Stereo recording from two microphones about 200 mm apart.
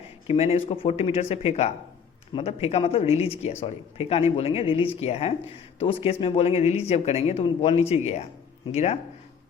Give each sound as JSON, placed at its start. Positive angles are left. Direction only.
{"t": 0.3, "sound": "speech", "side_deg": 30}